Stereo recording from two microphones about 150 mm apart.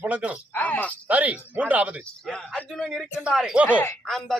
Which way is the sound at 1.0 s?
10° right (ahead or behind).